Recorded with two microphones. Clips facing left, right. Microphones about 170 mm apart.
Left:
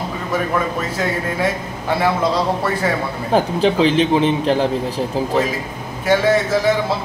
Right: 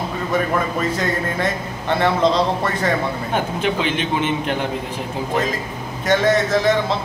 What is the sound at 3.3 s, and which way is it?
A man's voice, 30° left (ahead or behind).